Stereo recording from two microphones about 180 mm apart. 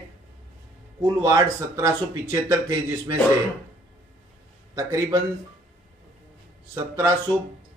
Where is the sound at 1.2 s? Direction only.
20° right (ahead or behind).